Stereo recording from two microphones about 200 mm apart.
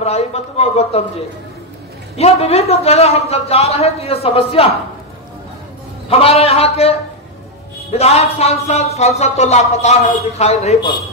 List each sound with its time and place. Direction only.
0.0 s speech: 30° left (ahead or behind)
2.1 s speech: 30° left (ahead or behind)
6.0 s a man's voice: 30° left (ahead or behind)
7.9 s speech: 30° left (ahead or behind)